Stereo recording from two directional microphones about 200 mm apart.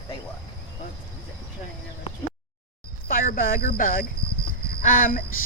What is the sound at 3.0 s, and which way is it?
Speech, 45° left (ahead or behind).